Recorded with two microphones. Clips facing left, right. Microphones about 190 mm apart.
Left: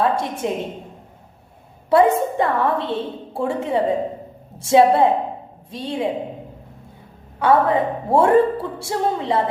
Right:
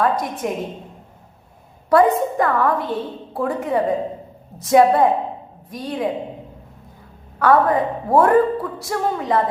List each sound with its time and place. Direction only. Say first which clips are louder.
0.0 s a woman's voice: even; 25° left (ahead or behind)
1.9 s a woman's voice: even; 25° left (ahead or behind)
7.3 s a woman's voice: right 1 dB; 25° left (ahead or behind)